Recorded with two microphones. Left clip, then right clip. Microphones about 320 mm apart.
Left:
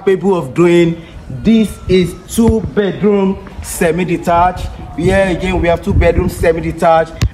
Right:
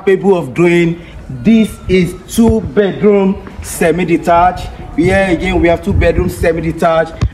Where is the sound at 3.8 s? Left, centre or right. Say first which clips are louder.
Right 3 dB; centre.